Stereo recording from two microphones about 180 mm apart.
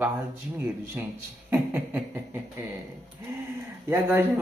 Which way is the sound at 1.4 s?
10° right (ahead or behind).